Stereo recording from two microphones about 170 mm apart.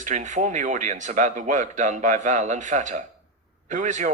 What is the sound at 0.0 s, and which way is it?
Speech, 45° right (ahead or behind).